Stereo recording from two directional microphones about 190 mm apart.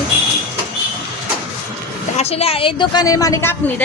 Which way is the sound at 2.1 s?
30° left (ahead or behind).